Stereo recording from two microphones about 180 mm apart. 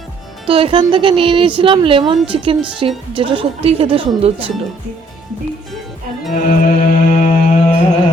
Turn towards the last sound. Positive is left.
turn(degrees=45)  # may be behind; listen again after turning